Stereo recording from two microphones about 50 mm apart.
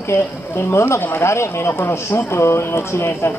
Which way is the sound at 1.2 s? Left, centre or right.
Left.